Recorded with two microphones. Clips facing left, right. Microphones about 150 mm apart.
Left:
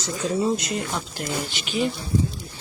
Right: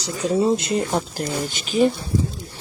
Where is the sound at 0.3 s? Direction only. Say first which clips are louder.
Right 6 dB; 25° right (ahead or behind).